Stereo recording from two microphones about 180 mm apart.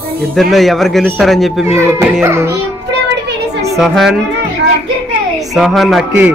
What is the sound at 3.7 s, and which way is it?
Speech, centre (ahead or behind).